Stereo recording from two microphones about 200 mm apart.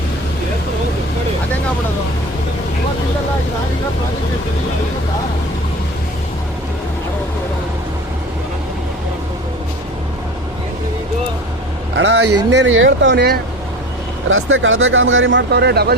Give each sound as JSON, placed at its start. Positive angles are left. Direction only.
{"t": 11.9, "sound": "speech", "side_deg": -60}
{"t": 14.3, "sound": "speech", "side_deg": -80}